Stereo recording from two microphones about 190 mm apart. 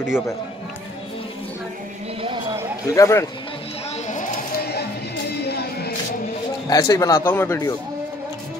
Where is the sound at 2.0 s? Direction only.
30° right (ahead or behind).